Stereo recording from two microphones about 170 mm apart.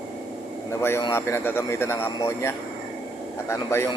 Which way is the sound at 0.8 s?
15° left (ahead or behind).